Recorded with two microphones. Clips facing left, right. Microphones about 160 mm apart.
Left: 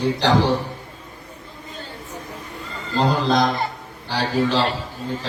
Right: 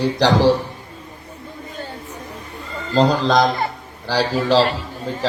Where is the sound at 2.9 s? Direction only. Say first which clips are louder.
Right 3 dB; 90° right.